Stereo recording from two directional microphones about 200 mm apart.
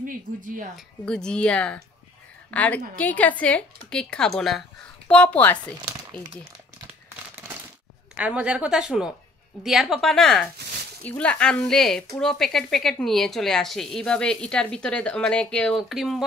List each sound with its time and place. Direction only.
0.0 s speech: 45° right (ahead or behind)
1.0 s speech: 5° left (ahead or behind)
8.2 s speech: 5° right (ahead or behind)